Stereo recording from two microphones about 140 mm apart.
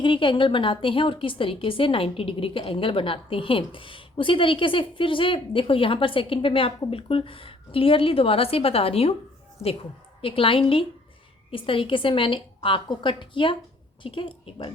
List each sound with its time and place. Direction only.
0.0 s a woman's voice: 35° left (ahead or behind)
10.2 s a woman's voice: 40° left (ahead or behind)